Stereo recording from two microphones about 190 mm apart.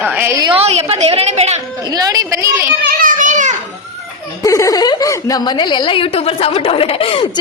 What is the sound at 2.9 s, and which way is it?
Children playing, 45° right (ahead or behind).